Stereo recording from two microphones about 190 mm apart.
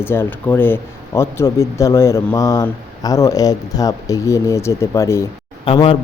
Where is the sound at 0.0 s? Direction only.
10° left (ahead or behind).